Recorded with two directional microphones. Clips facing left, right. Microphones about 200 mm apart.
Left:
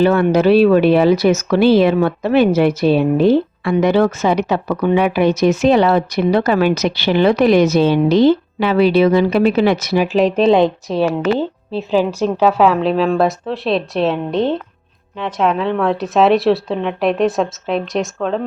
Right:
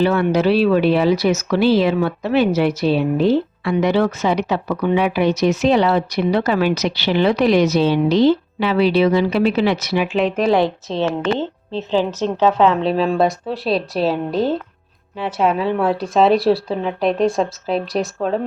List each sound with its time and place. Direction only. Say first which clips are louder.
0.0 s speech: left 3 dB; 50° left (ahead or behind)
10.4 s a woman's voice: left 4 dB; 20° left (ahead or behind); by 18.0 s centre (ahead or behind)